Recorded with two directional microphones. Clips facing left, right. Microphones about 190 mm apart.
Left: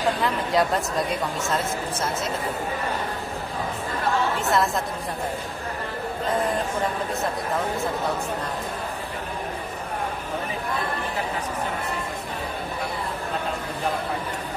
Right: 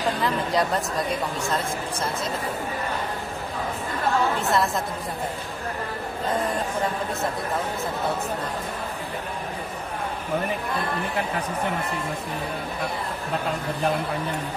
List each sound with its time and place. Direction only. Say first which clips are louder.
0.2 s a woman's voice: left 1 dB; centre (ahead or behind)
4.4 s a woman's voice: left 1 dB; centre (ahead or behind)